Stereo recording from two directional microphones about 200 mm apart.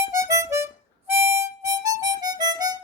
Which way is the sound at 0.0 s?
15° right (ahead or behind).